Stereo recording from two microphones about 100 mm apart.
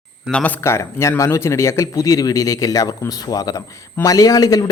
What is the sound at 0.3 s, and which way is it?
Speech, 10° left (ahead or behind).